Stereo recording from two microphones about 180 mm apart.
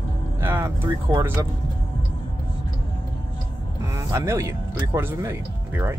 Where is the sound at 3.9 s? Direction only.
15° right (ahead or behind).